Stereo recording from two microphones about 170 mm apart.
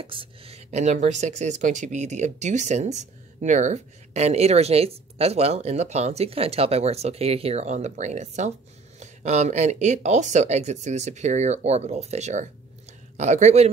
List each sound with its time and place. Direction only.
0.0 s speech: 30° right (ahead or behind)